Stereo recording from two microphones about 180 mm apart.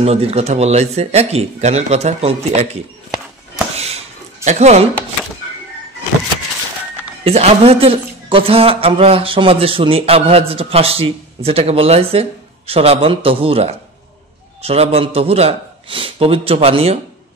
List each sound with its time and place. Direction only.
0.0 s a man's voice: 35° right (ahead or behind)
3.7 s a sound: 35° right (ahead or behind)
4.5 s a man's voice: 40° right (ahead or behind)
7.2 s a man's voice: 35° right (ahead or behind)